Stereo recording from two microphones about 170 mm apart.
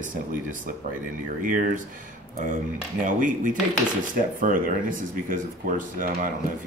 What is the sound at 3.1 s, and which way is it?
Speech, 50° right (ahead or behind).